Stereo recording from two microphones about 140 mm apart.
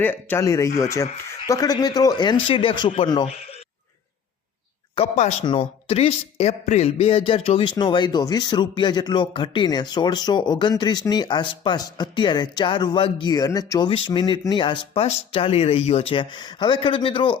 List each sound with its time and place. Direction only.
0.0 s a man's voice: 15° left (ahead or behind); by 3.1 s 40° left (ahead or behind)
5.1 s a man's voice: 55° left (ahead or behind); by 17.3 s 40° left (ahead or behind)